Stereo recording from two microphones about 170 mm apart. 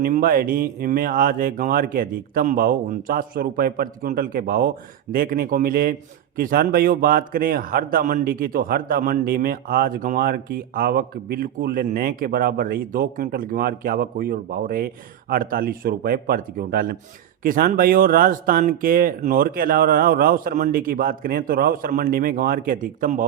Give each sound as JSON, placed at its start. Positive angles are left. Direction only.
{"t": 0.0, "sound": "a man's voice", "side_deg": -60}